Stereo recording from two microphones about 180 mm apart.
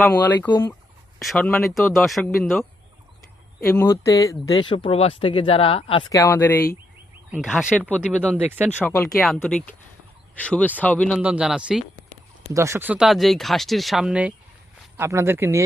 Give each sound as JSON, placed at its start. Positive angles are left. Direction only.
{"t": 0.0, "sound": "speech", "side_deg": 10}
{"t": 0.4, "sound": "speech", "side_deg": 25}
{"t": 1.2, "sound": "speech", "side_deg": 0}
{"t": 3.8, "sound": "speech", "side_deg": 15}
{"t": 6.1, "sound": "speech", "side_deg": 10}
{"t": 7.3, "sound": "speech", "side_deg": -5}
{"t": 8.8, "sound": "speech", "side_deg": 5}
{"t": 11.2, "sound": "speech", "side_deg": -5}
{"t": 12.5, "sound": "speech", "side_deg": -15}